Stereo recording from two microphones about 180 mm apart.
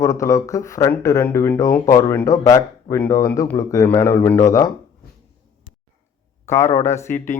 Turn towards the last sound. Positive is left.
turn(degrees=45)  # may be behind; listen again after turning